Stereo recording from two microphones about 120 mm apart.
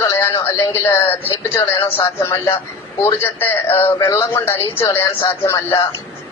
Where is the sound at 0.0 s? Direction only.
25° left (ahead or behind).